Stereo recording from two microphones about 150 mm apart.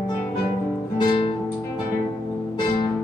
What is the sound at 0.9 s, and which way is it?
Music, 35° left (ahead or behind).